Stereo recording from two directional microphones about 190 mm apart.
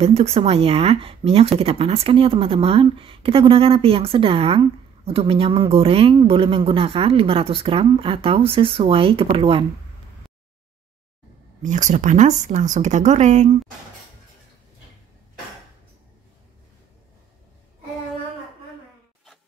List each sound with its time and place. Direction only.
0.0 s a woman's voice: 35° right (ahead or behind)
11.6 s speech: 40° right (ahead or behind)